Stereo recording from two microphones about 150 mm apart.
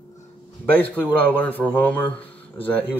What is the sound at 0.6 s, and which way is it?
A man's voice, 10° left (ahead or behind).